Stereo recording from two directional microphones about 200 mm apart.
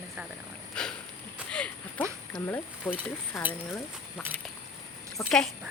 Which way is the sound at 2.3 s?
10° left (ahead or behind).